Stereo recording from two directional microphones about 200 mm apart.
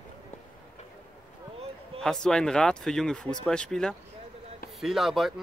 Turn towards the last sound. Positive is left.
turn(degrees=0)  # may be behind; listen again after turning